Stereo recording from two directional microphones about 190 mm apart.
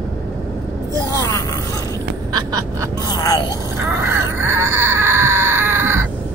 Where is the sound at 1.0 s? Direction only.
20° left (ahead or behind).